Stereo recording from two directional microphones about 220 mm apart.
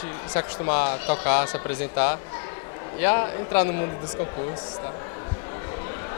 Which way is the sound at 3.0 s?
15° left (ahead or behind).